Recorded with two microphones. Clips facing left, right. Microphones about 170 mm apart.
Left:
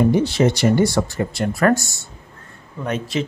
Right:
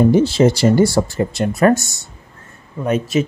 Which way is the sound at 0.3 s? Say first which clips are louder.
Right 3 dB; 30° right (ahead or behind).